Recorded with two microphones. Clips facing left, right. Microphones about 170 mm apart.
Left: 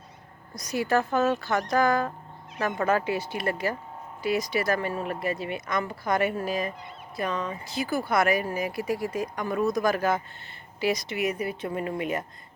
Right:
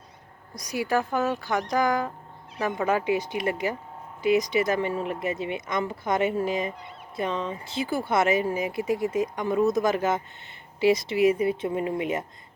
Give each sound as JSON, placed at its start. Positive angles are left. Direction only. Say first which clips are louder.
{"t": 0.5, "sound": "speech", "louder": "left 1 dB", "side_deg": -10}